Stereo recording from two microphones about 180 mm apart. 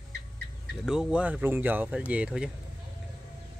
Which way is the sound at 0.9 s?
5° right (ahead or behind).